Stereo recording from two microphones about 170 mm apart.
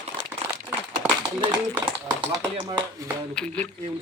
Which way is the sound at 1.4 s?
25° right (ahead or behind).